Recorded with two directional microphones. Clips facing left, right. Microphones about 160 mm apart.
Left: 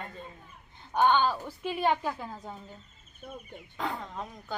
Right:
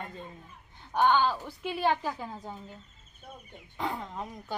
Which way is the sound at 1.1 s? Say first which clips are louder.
Even; 5° left (ahead or behind).